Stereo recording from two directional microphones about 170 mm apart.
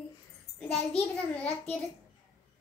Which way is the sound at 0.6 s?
5° left (ahead or behind).